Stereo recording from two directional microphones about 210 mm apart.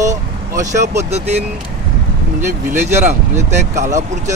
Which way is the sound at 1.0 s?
30° right (ahead or behind).